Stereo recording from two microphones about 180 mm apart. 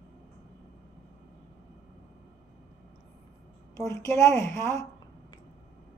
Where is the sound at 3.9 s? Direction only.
15° left (ahead or behind).